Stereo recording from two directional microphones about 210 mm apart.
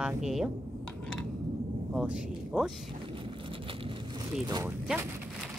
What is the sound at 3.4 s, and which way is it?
Vehicle, 25° right (ahead or behind).